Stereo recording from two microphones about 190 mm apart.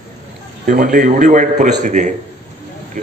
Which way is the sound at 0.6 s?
45° right (ahead or behind).